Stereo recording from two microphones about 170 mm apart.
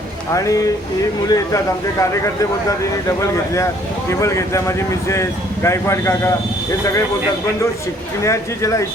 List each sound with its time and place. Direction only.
0.3 s speech: 20° left (ahead or behind)
8.2 s speech: 20° left (ahead or behind)